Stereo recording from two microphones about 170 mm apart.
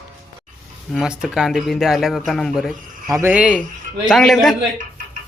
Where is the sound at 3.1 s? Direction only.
10° right (ahead or behind).